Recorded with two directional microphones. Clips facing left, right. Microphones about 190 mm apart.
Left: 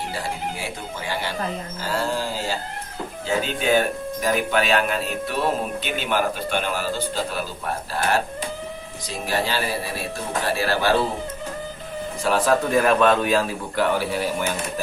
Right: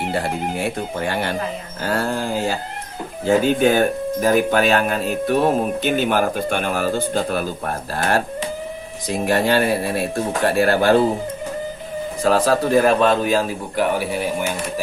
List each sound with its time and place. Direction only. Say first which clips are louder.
0.1 s speech: right 6 dB; 60° right (ahead or behind)
12.3 s a man's voice: right 3 dB; 40° right (ahead or behind)
13.7 s speech: right 2 dB; 15° right (ahead or behind)